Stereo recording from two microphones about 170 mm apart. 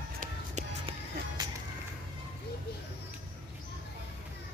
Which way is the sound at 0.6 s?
40° right (ahead or behind).